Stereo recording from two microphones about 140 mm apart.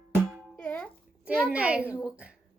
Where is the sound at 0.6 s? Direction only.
10° left (ahead or behind).